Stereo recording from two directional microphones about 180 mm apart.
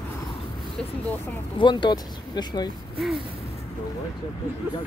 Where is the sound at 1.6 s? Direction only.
25° left (ahead or behind).